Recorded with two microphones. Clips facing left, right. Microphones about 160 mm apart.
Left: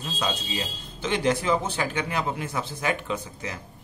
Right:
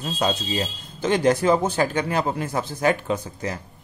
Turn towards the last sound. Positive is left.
turn(degrees=-40)  # may be behind; listen again after turning